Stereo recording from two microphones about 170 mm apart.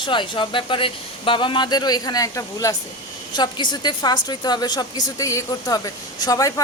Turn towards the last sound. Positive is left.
turn(degrees=20)  # may be behind; listen again after turning